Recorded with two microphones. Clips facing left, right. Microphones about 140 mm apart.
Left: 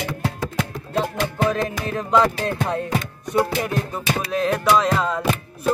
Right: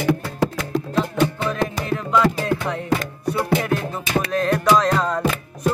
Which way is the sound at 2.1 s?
30° left (ahead or behind).